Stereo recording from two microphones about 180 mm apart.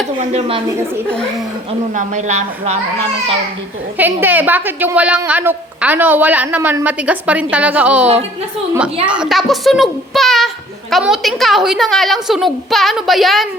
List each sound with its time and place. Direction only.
0.2 s speech: 35° right (ahead or behind)
1.9 s speech: 40° right (ahead or behind)
3.9 s a woman's voice: 10° right (ahead or behind)